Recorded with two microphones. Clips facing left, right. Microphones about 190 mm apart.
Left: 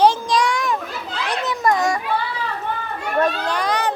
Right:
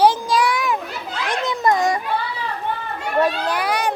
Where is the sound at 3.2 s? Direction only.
10° right (ahead or behind).